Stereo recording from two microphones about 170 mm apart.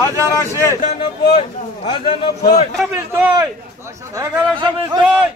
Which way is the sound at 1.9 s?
30° left (ahead or behind).